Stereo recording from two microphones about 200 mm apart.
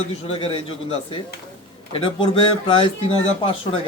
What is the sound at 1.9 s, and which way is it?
Speech, 25° left (ahead or behind).